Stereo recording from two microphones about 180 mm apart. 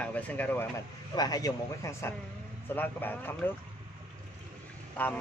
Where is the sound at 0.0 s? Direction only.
10° left (ahead or behind).